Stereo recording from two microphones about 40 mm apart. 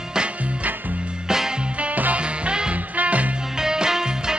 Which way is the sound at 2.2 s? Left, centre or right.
Right.